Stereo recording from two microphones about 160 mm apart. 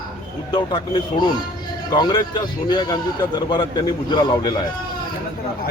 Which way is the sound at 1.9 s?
30° left (ahead or behind).